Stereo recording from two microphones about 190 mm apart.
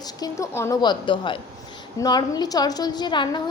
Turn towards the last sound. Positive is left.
turn(degrees=25)  # may be behind; listen again after turning